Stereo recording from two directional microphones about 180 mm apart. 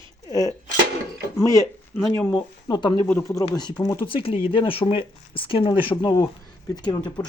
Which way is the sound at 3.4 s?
25° left (ahead or behind).